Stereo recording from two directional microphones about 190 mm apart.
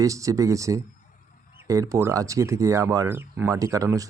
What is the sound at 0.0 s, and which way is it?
A man's voice, 15° right (ahead or behind).